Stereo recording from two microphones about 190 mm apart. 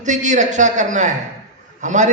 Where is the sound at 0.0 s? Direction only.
40° right (ahead or behind).